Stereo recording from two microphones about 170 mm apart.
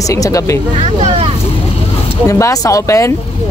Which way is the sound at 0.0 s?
20° left (ahead or behind).